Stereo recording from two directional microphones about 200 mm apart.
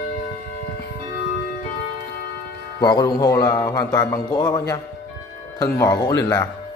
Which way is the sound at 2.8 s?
20° left (ahead or behind).